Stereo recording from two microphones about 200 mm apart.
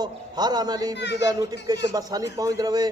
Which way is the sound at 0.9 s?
60° left (ahead or behind).